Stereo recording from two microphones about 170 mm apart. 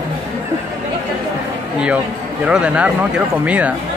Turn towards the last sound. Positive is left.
turn(degrees=-5)  # may be behind; listen again after turning